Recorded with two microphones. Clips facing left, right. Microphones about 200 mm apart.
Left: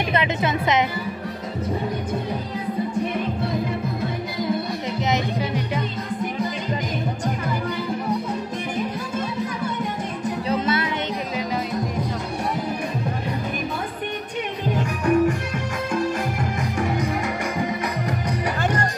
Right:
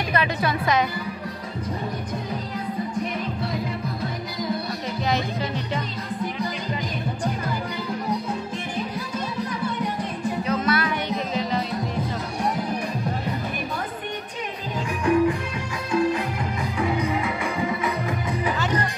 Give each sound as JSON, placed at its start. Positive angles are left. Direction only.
{"t": 0.1, "sound": "speech", "side_deg": 20}
{"t": 5.0, "sound": "music", "side_deg": 15}
{"t": 10.4, "sound": "music", "side_deg": 30}
{"t": 14.8, "sound": "music", "side_deg": 45}